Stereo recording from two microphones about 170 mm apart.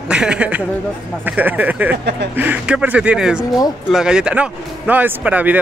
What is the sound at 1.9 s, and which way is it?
Speech, 75° right (ahead or behind).